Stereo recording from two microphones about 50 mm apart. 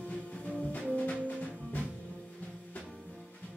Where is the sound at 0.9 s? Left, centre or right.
Left.